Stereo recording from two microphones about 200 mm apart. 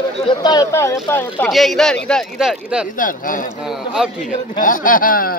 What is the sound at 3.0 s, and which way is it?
Speech, 45° left (ahead or behind).